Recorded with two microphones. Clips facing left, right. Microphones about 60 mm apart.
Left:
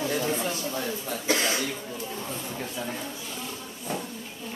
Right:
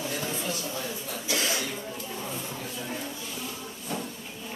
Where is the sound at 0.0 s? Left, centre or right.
Left.